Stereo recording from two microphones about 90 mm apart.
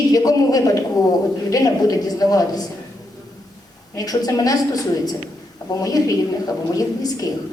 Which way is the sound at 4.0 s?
45° left (ahead or behind).